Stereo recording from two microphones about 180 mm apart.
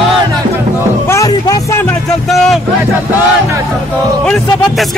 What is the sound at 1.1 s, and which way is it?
Music, 20° left (ahead or behind).